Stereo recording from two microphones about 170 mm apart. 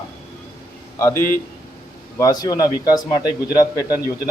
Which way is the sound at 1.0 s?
15° left (ahead or behind).